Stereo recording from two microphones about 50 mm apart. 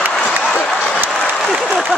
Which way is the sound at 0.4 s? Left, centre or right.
Left.